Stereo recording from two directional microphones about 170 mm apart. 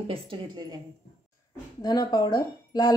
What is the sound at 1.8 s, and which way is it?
Speech, 25° left (ahead or behind).